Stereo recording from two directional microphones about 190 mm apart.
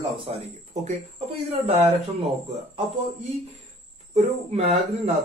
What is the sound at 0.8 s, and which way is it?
Speech, 35° right (ahead or behind).